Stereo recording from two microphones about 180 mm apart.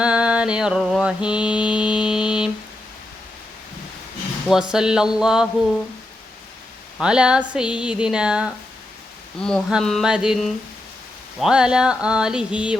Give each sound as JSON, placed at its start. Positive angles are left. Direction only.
{"t": 0.0, "sound": "mantra", "side_deg": -5}
{"t": 4.4, "sound": "speech", "side_deg": -5}
{"t": 7.0, "sound": "speech", "side_deg": -5}